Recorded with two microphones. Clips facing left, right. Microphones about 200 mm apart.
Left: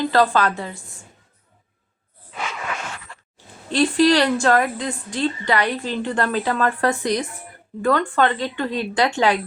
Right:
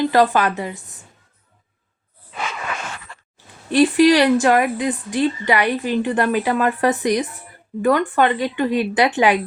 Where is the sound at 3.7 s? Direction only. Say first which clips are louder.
Right 3 dB; 15° right (ahead or behind).